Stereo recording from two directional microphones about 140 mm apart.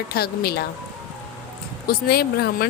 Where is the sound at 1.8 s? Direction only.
90° left.